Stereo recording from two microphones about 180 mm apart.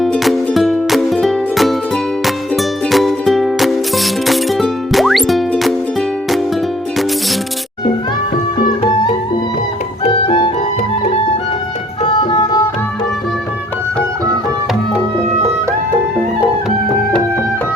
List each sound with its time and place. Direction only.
0.0 s music: centre (ahead or behind)
10.0 s music: 35° left (ahead or behind)
12.0 s music: 25° left (ahead or behind)
16.6 s music: 5° left (ahead or behind)